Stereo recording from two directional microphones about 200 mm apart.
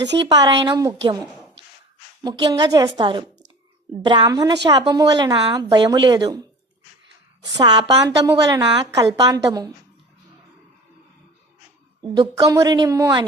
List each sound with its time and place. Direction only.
0.0 s speech: 60° right (ahead or behind)
0.3 s a woman's voice: 20° right (ahead or behind)
12.1 s a woman's voice: 20° right (ahead or behind)